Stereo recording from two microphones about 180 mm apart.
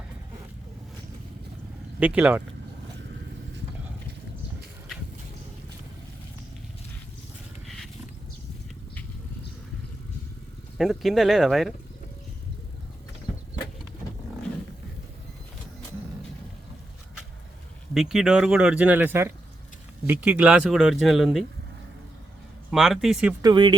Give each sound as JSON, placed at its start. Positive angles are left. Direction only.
{"t": 2.0, "sound": "speech", "side_deg": -10}
{"t": 10.8, "sound": "speech", "side_deg": 0}
{"t": 17.9, "sound": "speech", "side_deg": 0}
{"t": 22.7, "sound": "speech", "side_deg": 0}
{"t": 23.4, "sound": "speech", "side_deg": -25}